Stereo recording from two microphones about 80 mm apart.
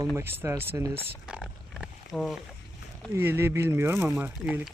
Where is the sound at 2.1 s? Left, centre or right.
Centre.